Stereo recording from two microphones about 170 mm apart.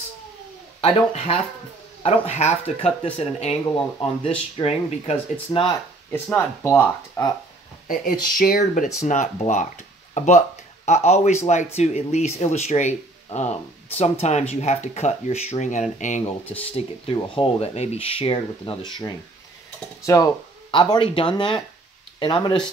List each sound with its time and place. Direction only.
0.7 s speech: 35° left (ahead or behind)
4.6 s speech: 40° left (ahead or behind)
6.1 s speech: 10° left (ahead or behind)
7.9 s speech: 55° left (ahead or behind)
8.8 s speech: 45° left (ahead or behind)
16.7 s speech: 30° left (ahead or behind)
20.7 s speech: 30° left (ahead or behind)